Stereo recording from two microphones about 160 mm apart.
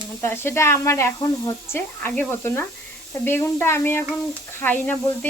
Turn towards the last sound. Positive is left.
turn(degrees=10)  # may be behind; listen again after turning